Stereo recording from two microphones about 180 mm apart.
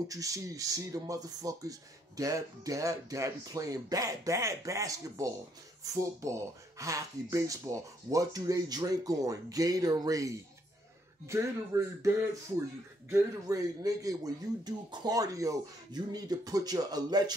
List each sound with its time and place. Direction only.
0.1 s speech: 20° right (ahead or behind)